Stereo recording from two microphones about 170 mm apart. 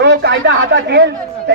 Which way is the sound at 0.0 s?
90° right.